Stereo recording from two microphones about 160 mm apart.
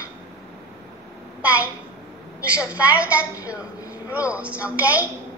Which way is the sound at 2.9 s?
10° right (ahead or behind).